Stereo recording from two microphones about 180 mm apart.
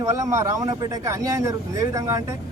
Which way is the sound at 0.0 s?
15° right (ahead or behind).